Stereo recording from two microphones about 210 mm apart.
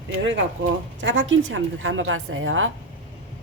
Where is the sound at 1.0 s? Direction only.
65° right (ahead or behind).